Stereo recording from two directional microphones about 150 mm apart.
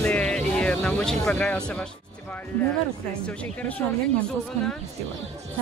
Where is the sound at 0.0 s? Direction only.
10° left (ahead or behind).